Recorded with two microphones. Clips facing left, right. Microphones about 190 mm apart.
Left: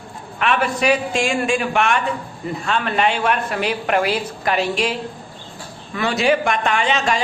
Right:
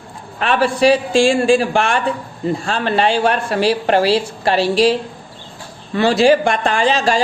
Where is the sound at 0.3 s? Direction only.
35° right (ahead or behind).